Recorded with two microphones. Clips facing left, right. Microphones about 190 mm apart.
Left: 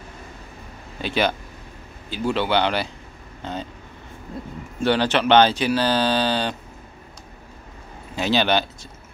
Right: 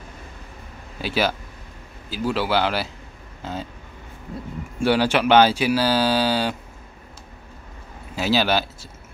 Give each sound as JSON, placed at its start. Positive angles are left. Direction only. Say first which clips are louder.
{"t": 1.0, "sound": "speech", "louder": "left 1 dB", "side_deg": -5}
{"t": 4.7, "sound": "speech", "louder": "right 1 dB", "side_deg": -10}
{"t": 8.2, "sound": "speech", "louder": "even", "side_deg": -5}